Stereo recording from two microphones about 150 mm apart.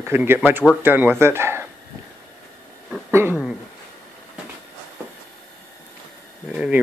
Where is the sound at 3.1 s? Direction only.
15° right (ahead or behind).